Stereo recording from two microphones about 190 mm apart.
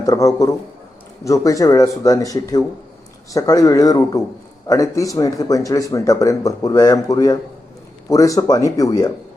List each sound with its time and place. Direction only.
0.0 s speech: 20° left (ahead or behind)